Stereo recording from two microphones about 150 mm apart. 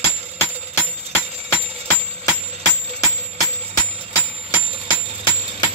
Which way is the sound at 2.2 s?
20° left (ahead or behind).